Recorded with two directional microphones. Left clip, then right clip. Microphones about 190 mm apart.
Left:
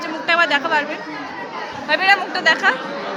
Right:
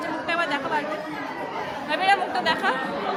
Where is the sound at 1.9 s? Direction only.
15° left (ahead or behind).